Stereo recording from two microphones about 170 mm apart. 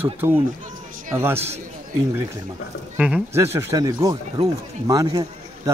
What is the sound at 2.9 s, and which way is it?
Speech, 5° right (ahead or behind).